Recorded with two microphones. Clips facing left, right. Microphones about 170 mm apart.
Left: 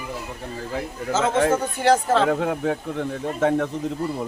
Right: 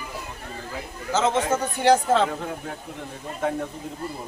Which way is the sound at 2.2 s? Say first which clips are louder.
Left 9 dB; 70° left (ahead or behind).